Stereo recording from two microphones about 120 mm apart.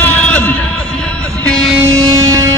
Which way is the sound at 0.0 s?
10° left (ahead or behind).